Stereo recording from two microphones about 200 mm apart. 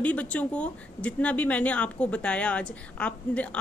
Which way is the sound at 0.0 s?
5° left (ahead or behind).